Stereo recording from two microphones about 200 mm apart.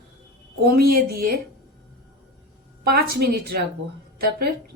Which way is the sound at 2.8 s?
50° right (ahead or behind).